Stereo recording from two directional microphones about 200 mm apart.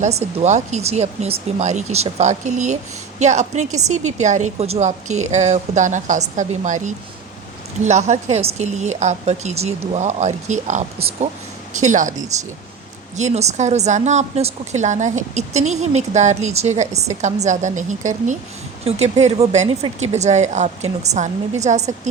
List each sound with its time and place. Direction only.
0.0 s speech: 30° right (ahead or behind)